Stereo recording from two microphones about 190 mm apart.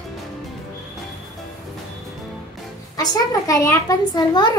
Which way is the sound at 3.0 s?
15° left (ahead or behind).